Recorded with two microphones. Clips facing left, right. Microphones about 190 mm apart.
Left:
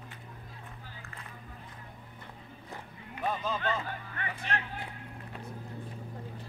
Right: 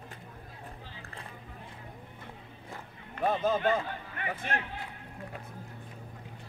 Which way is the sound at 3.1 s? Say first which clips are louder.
Right 5 dB; 50° right (ahead or behind).